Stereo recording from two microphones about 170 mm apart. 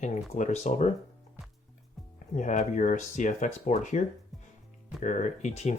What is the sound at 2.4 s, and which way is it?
Speech, 45° left (ahead or behind).